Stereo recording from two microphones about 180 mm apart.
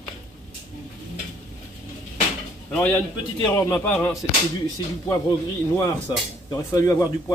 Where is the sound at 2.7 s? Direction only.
10° left (ahead or behind).